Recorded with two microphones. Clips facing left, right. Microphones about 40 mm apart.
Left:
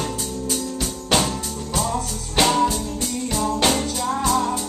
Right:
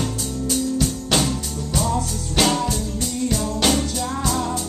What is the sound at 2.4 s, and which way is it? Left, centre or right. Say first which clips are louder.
Music: left 2 dB; centre.